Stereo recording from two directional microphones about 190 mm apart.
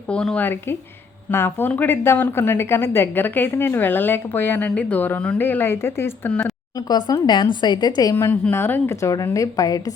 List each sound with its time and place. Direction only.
0.1 s a woman's voice: 5° left (ahead or behind)
6.7 s speech: 20° left (ahead or behind)